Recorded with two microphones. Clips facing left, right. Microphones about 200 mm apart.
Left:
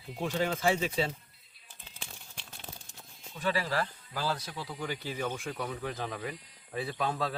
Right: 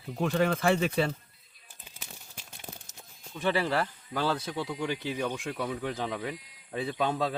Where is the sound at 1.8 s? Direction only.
5° right (ahead or behind).